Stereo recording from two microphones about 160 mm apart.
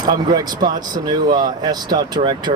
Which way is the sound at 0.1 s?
25° right (ahead or behind).